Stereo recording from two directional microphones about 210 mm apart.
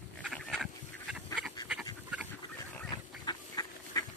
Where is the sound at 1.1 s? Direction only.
5° right (ahead or behind).